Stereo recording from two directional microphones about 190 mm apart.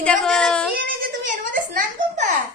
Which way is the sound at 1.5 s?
45° right (ahead or behind).